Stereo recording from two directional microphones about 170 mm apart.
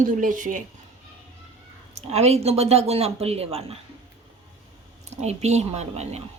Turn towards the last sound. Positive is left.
turn(degrees=-40)  # may be behind; listen again after turning